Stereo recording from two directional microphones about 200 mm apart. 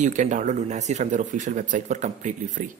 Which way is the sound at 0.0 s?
40° right (ahead or behind).